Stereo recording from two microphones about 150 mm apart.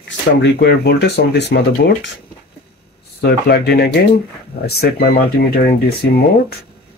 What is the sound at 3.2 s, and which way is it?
Speech, 90° left.